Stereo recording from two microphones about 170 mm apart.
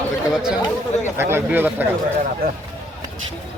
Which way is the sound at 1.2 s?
15° right (ahead or behind).